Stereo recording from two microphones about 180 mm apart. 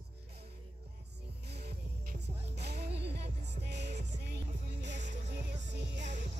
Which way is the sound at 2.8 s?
70° right (ahead or behind).